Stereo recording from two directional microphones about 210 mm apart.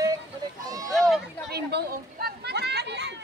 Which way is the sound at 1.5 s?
50° right (ahead or behind).